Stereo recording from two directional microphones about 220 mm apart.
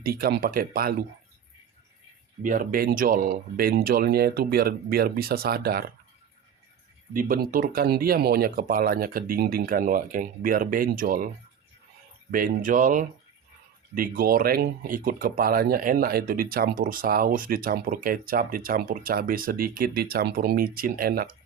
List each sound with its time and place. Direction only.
0.0 s speech: 45° right (ahead or behind)
2.4 s speech: 35° right (ahead or behind)
7.1 s speech: 40° right (ahead or behind)
12.3 s speech: 40° right (ahead or behind)